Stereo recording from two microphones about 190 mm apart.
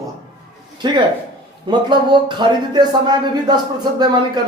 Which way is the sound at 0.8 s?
25° right (ahead or behind).